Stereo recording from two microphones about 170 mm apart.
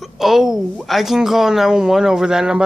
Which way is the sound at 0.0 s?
Centre (ahead or behind).